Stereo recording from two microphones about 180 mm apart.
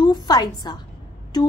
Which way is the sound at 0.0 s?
20° left (ahead or behind).